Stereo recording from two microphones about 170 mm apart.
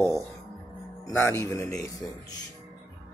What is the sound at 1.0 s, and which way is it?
Speech, 15° left (ahead or behind).